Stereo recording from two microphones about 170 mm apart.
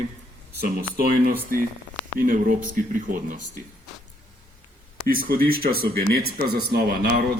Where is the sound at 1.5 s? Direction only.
55° right (ahead or behind).